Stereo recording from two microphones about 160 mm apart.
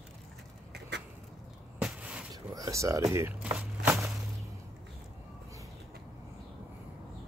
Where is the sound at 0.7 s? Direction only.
90° right.